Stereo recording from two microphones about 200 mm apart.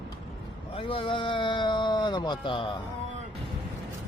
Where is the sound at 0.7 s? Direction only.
25° left (ahead or behind).